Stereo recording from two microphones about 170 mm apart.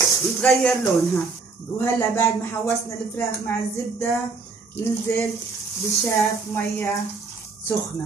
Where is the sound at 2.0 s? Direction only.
15° left (ahead or behind).